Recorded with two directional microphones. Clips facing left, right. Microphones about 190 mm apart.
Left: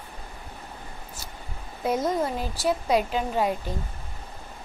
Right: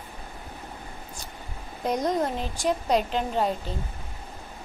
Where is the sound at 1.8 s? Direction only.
5° left (ahead or behind).